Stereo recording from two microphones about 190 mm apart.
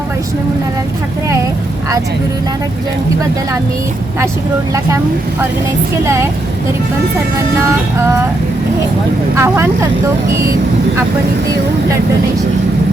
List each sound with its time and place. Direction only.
9.4 s speech: 15° right (ahead or behind)